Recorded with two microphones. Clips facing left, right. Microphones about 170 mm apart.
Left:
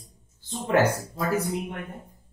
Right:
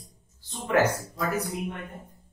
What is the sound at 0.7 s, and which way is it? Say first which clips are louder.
Speech: left 1 dB; 30° left (ahead or behind).